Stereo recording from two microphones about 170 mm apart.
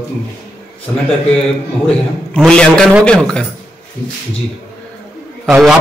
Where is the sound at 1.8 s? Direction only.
5° left (ahead or behind).